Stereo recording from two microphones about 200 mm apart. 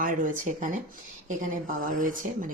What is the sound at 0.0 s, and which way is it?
Speech, 40° right (ahead or behind).